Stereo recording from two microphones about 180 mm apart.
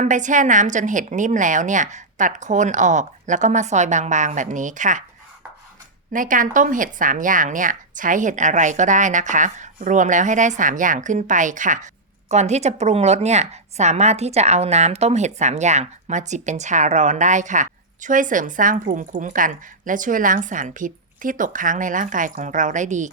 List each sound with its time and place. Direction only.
0.0 s a woman's voice: 45° right (ahead or behind)
6.1 s a woman's voice: 50° right (ahead or behind)